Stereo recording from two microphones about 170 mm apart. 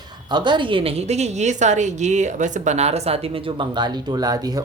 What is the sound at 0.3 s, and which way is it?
A woman's voice, 25° right (ahead or behind).